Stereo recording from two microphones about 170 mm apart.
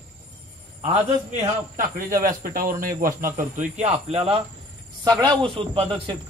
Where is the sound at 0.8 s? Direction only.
35° right (ahead or behind).